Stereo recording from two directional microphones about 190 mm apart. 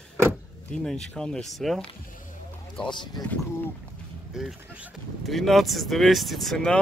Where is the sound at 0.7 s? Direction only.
5° left (ahead or behind).